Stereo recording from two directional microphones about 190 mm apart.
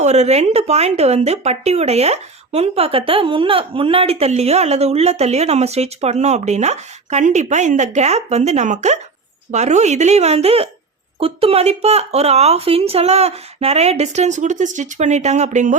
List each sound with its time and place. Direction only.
0.0 s speech: 35° right (ahead or behind)